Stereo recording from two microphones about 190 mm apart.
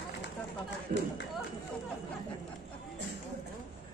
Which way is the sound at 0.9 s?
45° right (ahead or behind).